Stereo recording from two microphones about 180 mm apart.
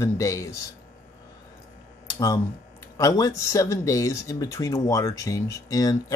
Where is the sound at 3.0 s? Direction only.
20° left (ahead or behind).